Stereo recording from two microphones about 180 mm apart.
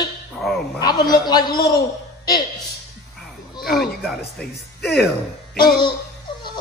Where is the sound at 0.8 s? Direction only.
20° left (ahead or behind).